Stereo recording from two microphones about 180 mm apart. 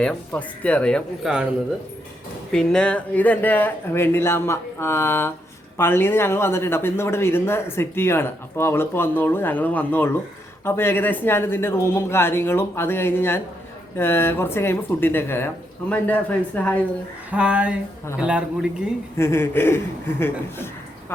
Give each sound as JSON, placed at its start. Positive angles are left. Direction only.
{"t": 0.0, "sound": "speech", "side_deg": 5}
{"t": 2.5, "sound": "speech", "side_deg": 5}
{"t": 17.3, "sound": "speech", "side_deg": -5}
{"t": 19.1, "sound": "speech", "side_deg": 15}